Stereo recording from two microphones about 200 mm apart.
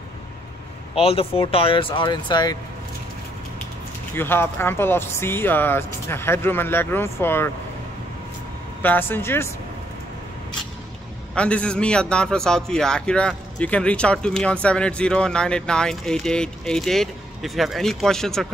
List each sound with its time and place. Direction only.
0.9 s speech: 30° left (ahead or behind)
4.1 s speech: 10° left (ahead or behind)
8.8 s speech: 10° left (ahead or behind)
11.3 s a man's voice: 5° left (ahead or behind)